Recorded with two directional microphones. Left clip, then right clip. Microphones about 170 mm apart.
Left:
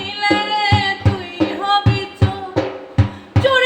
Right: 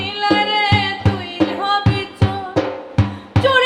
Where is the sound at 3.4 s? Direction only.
20° right (ahead or behind).